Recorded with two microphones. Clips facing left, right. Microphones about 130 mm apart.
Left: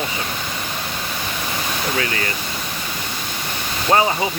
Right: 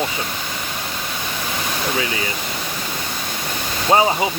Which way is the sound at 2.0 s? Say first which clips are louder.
Even; 10° right (ahead or behind).